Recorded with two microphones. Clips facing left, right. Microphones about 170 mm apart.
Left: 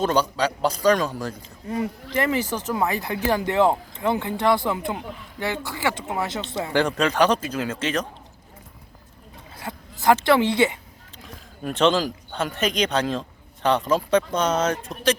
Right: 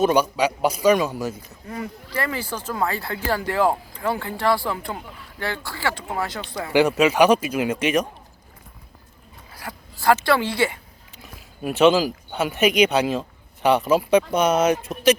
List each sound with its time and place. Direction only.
0.0 s a man's voice: 10° right (ahead or behind)
1.4 s speech: 25° left (ahead or behind)
6.7 s a man's voice: 10° right (ahead or behind)
9.6 s a sound: 20° left (ahead or behind)
10.2 s speech: 20° left (ahead or behind)
11.2 s speech: 10° right (ahead or behind)